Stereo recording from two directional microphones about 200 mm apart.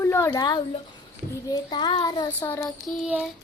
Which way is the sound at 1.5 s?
20° left (ahead or behind).